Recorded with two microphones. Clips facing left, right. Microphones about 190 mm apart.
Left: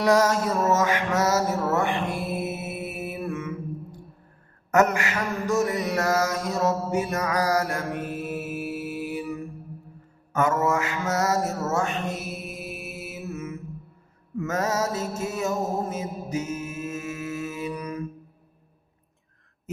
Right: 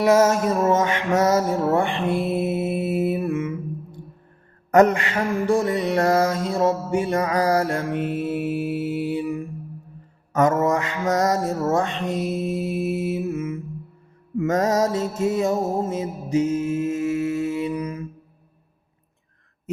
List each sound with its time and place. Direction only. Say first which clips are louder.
0.0 s music: right 4 dB; 20° right (ahead or behind)
0.7 s music: right 3 dB; 30° right (ahead or behind)
3.0 s mantra: right 8 dB; 30° right (ahead or behind)
4.7 s a sound: right 5 dB; 30° right (ahead or behind)
10.3 s mantra: right 4 dB; 40° right (ahead or behind)
12.2 s mantra: right 11 dB; 90° right
13.1 s mantra: right 9 dB; 30° right (ahead or behind)
15.3 s music: right 5 dB; 30° right (ahead or behind)